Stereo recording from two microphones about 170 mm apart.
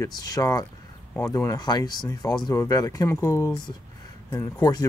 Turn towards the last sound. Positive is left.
turn(degrees=25)  # may be behind; listen again after turning